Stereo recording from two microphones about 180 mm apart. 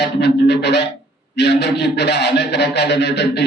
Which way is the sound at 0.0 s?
65° left (ahead or behind).